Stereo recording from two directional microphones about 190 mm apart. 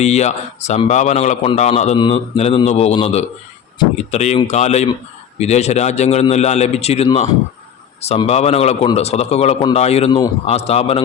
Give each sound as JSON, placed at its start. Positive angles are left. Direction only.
{"t": 0.0, "sound": "a man's voice", "side_deg": 35}